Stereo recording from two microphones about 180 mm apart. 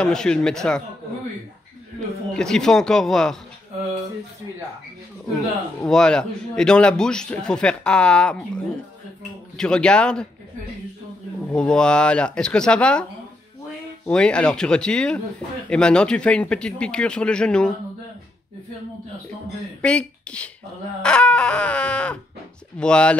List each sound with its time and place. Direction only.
0.0 s a man's voice: 5° left (ahead or behind)
2.3 s a man's voice: 5° left (ahead or behind)
5.3 s a man's voice: 5° left (ahead or behind)
9.6 s a man's voice: 5° left (ahead or behind)
11.4 s a man's voice: 5° left (ahead or behind)
14.0 s a man's voice: 5° left (ahead or behind)
19.8 s a man's voice: 5° left (ahead or behind)